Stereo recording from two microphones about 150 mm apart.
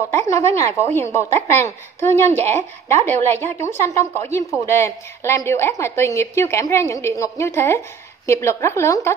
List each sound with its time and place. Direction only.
0.1 s a woman's voice: 20° left (ahead or behind)